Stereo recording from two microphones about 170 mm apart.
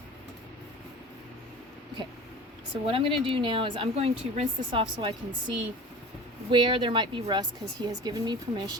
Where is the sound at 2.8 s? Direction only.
30° right (ahead or behind).